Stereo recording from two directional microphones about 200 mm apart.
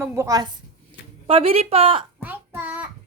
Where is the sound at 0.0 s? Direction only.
15° right (ahead or behind).